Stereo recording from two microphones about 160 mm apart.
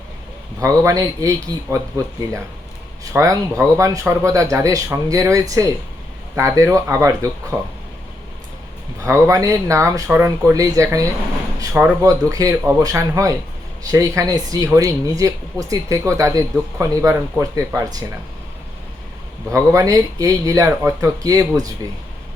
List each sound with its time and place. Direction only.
0.6 s speech: 20° right (ahead or behind)
3.0 s speech: 20° right (ahead or behind)
9.0 s speech: 20° right (ahead or behind)
19.5 s speech: 20° right (ahead or behind)